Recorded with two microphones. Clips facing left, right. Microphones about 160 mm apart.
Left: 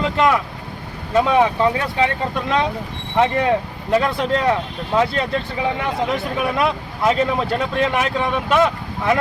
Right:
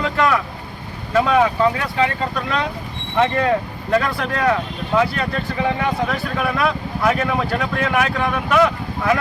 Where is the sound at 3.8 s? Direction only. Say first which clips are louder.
Left 2 dB; 20° left (ahead or behind).